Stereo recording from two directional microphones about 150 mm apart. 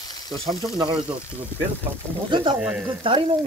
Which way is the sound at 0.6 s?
30° right (ahead or behind).